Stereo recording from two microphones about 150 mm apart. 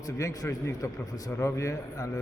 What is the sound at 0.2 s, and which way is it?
A man's voice, 20° left (ahead or behind).